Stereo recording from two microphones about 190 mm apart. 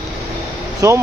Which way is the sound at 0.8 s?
15° right (ahead or behind).